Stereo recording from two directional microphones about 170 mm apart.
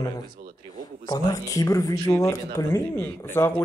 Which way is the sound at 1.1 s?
20° left (ahead or behind).